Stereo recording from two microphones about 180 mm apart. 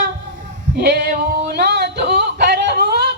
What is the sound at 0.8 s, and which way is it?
Male singing, 65° right (ahead or behind).